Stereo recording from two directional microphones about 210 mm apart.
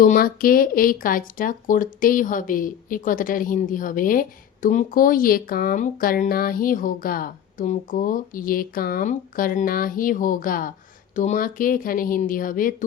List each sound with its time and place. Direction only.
0.0 s speech: 40° left (ahead or behind)